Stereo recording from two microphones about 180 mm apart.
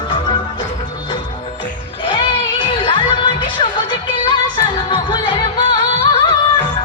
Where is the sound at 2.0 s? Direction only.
25° left (ahead or behind).